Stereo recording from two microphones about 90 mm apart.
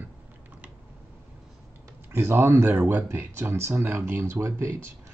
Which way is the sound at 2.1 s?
25° right (ahead or behind).